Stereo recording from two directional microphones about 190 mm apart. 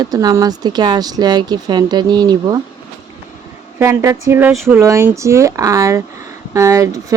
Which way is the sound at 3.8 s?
15° right (ahead or behind).